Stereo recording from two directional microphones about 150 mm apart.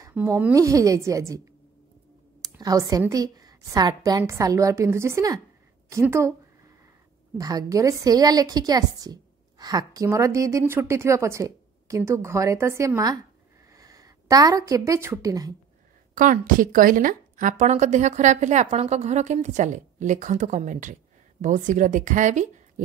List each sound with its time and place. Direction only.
0.1 s a woman's voice: 15° right (ahead or behind)
2.4 s a woman's voice: 25° right (ahead or behind)
7.3 s a woman's voice: 25° right (ahead or behind)
16.2 s a woman's voice: 60° right (ahead or behind)